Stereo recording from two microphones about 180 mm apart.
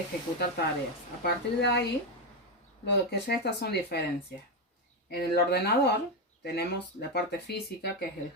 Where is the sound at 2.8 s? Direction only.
70° left (ahead or behind).